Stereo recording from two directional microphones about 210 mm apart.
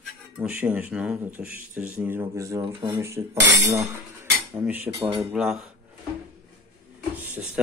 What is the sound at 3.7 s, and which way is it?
Cutlery, 10° right (ahead or behind).